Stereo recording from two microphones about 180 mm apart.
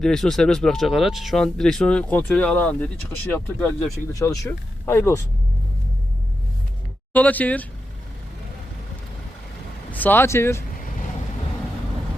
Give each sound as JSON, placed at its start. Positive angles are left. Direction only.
{"t": 0.0, "sound": "speech", "side_deg": 0}
{"t": 4.1, "sound": "speech", "side_deg": 20}
{"t": 7.1, "sound": "speech", "side_deg": 10}
{"t": 9.9, "sound": "speech", "side_deg": 10}
{"t": 10.8, "sound": "vehicle", "side_deg": 50}